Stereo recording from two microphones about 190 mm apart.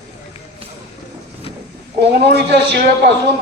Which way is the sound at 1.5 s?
30° left (ahead or behind).